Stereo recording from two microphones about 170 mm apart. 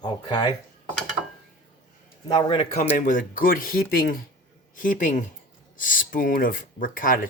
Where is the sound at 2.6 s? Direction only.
45° left (ahead or behind).